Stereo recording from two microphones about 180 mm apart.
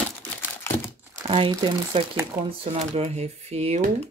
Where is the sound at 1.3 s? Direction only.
30° right (ahead or behind).